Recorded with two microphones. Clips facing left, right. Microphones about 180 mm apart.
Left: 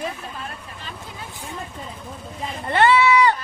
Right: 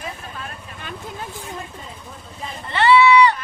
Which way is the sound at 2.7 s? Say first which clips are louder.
Right 2 dB; 50° left (ahead or behind).